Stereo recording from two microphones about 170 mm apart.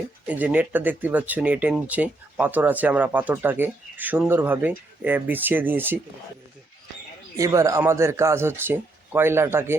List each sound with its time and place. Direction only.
0.3 s speech: 10° right (ahead or behind)
7.3 s speech: 20° right (ahead or behind)